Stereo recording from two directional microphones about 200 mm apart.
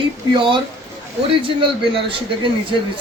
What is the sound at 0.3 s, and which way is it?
Speech, 25° right (ahead or behind).